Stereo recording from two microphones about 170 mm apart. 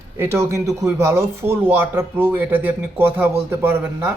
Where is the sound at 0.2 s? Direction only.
15° right (ahead or behind).